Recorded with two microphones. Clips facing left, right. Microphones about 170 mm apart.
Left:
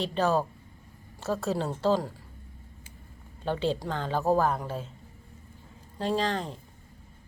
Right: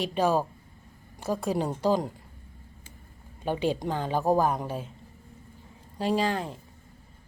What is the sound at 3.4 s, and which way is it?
A woman's voice, 15° right (ahead or behind).